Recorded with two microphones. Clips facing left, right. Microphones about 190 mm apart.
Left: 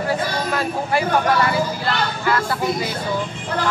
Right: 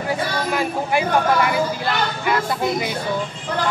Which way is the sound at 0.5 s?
15° right (ahead or behind).